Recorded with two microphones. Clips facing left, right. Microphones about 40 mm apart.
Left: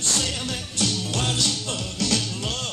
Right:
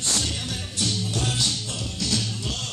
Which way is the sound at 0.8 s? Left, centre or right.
Left.